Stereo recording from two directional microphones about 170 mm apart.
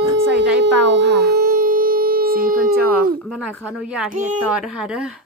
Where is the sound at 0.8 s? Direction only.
90° right; by 2.7 s 60° right (ahead or behind).